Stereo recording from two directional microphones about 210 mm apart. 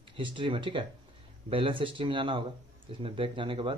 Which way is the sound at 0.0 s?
25° right (ahead or behind).